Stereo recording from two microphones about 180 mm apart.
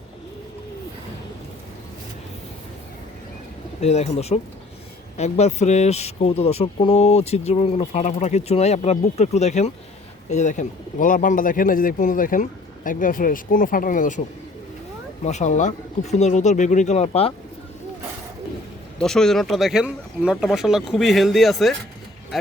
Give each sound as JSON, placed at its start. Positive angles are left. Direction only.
{"t": 3.8, "sound": "speech", "side_deg": 35}
{"t": 15.2, "sound": "speech", "side_deg": 40}
{"t": 18.9, "sound": "speech", "side_deg": 5}